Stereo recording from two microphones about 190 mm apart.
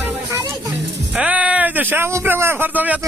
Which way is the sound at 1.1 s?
5° right (ahead or behind).